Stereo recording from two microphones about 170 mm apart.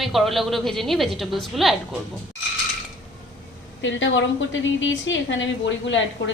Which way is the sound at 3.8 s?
90° left.